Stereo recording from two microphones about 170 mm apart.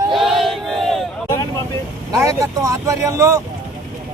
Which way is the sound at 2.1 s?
20° right (ahead or behind).